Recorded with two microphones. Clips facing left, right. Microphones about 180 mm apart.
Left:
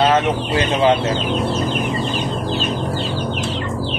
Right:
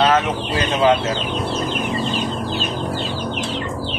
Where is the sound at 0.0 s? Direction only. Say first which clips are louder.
Left 1 dB; 25° left (ahead or behind).